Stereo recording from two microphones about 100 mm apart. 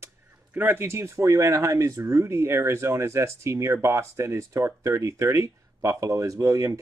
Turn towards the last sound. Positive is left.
turn(degrees=-30)  # may be behind; listen again after turning